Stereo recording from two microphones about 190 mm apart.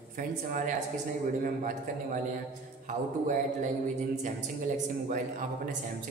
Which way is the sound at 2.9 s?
40° right (ahead or behind).